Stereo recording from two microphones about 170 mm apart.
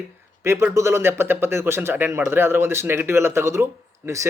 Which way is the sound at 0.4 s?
15° right (ahead or behind).